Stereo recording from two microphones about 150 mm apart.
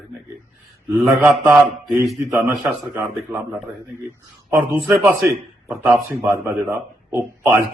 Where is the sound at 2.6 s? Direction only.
15° right (ahead or behind).